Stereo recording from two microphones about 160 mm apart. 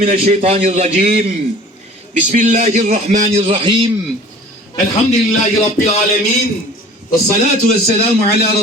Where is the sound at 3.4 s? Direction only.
35° right (ahead or behind).